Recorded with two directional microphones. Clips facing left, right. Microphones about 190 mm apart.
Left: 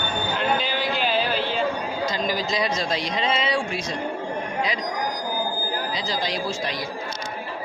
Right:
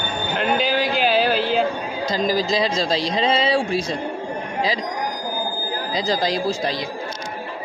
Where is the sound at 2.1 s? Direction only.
35° right (ahead or behind).